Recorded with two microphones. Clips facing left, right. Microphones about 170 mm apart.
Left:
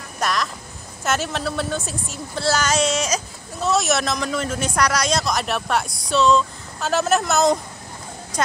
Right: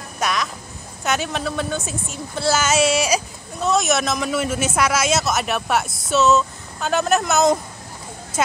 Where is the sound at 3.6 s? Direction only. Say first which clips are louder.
Right 1 dB; centre (ahead or behind).